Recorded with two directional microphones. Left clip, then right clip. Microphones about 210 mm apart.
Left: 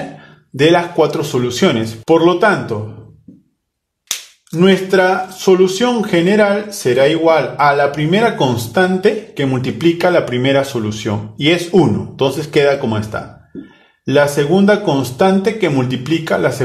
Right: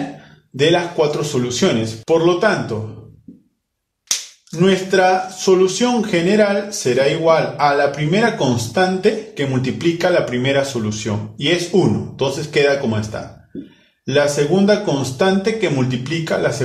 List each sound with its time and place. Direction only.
0.6 s speech: 45° left (ahead or behind)
4.6 s speech: 45° left (ahead or behind)
14.0 s speech: 40° left (ahead or behind)